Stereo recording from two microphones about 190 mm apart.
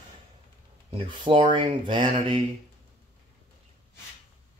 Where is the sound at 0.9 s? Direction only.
25° right (ahead or behind).